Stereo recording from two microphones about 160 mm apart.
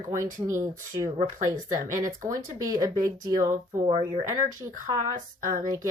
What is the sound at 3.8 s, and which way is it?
Speech, 40° right (ahead or behind).